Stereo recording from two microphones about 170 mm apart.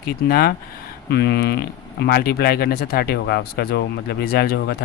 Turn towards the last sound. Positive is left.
turn(degrees=70)  # may be behind; listen again after turning